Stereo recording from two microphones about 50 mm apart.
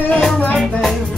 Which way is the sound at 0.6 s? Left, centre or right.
Centre.